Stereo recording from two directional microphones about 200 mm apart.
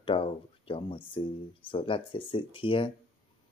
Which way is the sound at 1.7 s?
25° left (ahead or behind).